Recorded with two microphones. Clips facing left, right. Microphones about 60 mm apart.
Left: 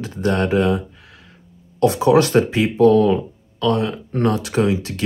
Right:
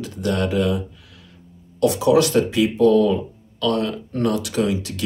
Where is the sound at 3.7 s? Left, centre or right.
Left.